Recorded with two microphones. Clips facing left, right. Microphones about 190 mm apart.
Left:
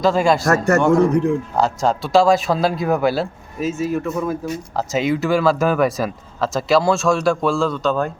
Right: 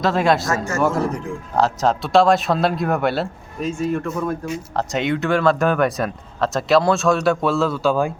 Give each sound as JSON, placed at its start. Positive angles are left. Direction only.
{"t": 0.0, "sound": "speech", "side_deg": 0}
{"t": 0.4, "sound": "a man's voice", "side_deg": 65}
{"t": 0.8, "sound": "speech", "side_deg": -5}